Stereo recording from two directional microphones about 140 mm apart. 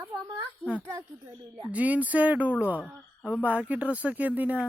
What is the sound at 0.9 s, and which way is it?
Speech, 30° right (ahead or behind).